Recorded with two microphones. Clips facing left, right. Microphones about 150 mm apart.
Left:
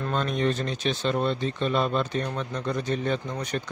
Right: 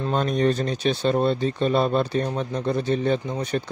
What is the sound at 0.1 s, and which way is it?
A man's voice, 40° right (ahead or behind).